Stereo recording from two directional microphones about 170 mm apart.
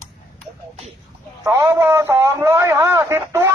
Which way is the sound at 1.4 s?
15° right (ahead or behind).